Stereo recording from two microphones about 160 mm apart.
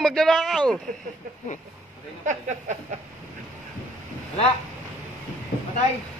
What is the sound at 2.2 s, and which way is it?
Speech, 50° right (ahead or behind).